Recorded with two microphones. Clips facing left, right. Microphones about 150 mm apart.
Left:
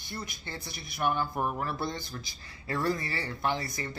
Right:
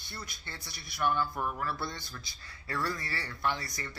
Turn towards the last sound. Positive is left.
turn(degrees=20)  # may be behind; listen again after turning